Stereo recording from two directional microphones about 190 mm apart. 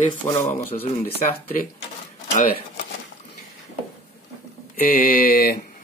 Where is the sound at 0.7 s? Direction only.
40° left (ahead or behind).